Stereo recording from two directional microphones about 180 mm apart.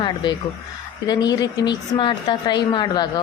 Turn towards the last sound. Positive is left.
turn(degrees=25)  # may be behind; listen again after turning